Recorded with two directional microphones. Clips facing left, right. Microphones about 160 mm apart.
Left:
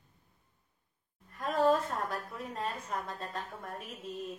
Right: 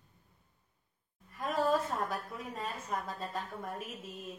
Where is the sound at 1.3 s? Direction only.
Centre (ahead or behind).